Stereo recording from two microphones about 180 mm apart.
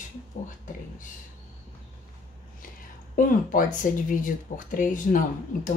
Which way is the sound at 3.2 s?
50° left (ahead or behind).